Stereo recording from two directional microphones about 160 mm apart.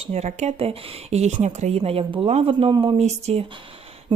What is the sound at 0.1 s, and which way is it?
A woman's voice, 45° right (ahead or behind).